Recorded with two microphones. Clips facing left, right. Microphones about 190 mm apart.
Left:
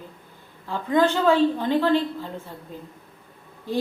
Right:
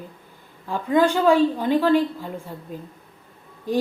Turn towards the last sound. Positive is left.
turn(degrees=-15)  # may be behind; listen again after turning